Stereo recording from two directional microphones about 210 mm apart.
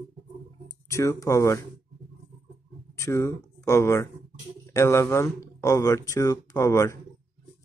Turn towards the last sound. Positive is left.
turn(degrees=15)  # may be behind; listen again after turning